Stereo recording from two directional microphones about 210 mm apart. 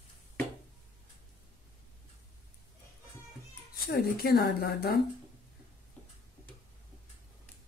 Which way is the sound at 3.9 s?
50° left (ahead or behind).